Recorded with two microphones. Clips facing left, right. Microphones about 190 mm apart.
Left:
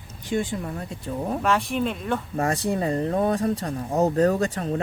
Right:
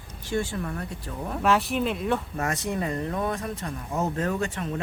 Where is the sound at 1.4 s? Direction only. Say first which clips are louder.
Right 2 dB; centre (ahead or behind).